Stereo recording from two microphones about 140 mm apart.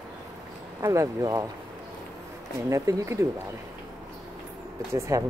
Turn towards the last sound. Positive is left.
turn(degrees=-20)  # may be behind; listen again after turning